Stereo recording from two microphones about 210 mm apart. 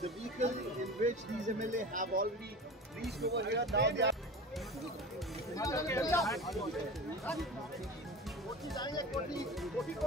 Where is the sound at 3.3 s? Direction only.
50° right (ahead or behind).